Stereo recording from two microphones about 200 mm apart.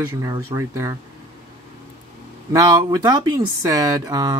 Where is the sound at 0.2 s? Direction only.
15° right (ahead or behind).